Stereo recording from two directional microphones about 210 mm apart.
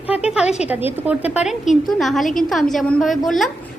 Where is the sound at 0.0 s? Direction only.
5° right (ahead or behind).